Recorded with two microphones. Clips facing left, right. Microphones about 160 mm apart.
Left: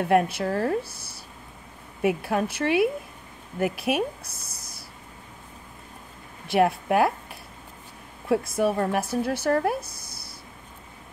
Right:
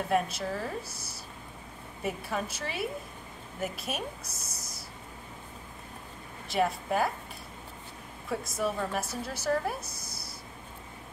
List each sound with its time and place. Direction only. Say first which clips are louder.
0.1 s speech: left 8 dB; 70° left (ahead or behind)
2.0 s speech: left 9 dB; 70° left (ahead or behind)
6.4 s speech: left 7 dB; 65° left (ahead or behind)
8.3 s speech: left 9 dB; 65° left (ahead or behind)